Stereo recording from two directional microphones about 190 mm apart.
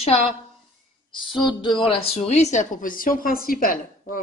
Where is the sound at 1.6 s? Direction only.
25° left (ahead or behind).